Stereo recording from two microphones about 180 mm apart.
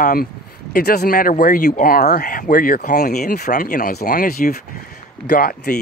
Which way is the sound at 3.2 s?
60° left (ahead or behind).